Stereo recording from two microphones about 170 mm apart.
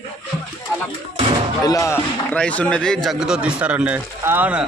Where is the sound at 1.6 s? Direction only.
20° left (ahead or behind).